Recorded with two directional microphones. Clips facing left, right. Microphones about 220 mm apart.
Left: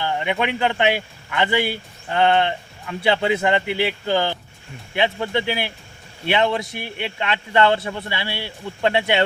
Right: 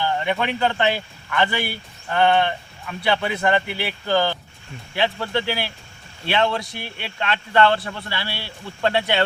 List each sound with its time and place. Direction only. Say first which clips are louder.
0.0 s a man's voice: even; 15° left (ahead or behind)